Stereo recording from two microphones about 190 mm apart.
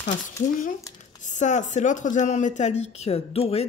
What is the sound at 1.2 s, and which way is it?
Speech, 40° left (ahead or behind).